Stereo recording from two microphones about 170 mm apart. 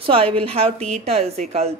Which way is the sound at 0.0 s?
35° right (ahead or behind).